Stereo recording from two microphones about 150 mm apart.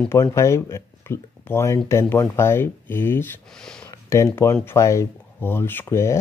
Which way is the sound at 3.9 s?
20° left (ahead or behind).